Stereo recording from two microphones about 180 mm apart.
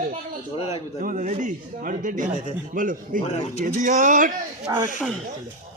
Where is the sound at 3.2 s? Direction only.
40° left (ahead or behind).